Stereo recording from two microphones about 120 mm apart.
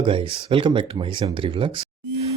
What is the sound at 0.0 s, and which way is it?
Speech, 45° right (ahead or behind).